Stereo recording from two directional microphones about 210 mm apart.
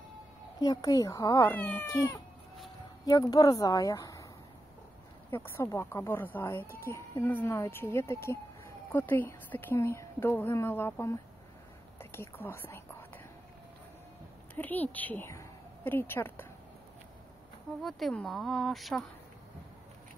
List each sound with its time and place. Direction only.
0.6 s speech: 15° left (ahead or behind)
5.3 s speech: 10° left (ahead or behind)
14.5 s a woman's voice: 10° left (ahead or behind)
17.8 s speech: centre (ahead or behind)